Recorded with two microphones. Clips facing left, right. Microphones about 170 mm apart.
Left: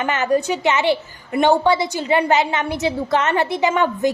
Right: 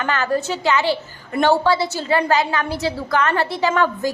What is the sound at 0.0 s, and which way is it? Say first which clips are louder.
A woman's voice: left 2 dB; 20° left (ahead or behind).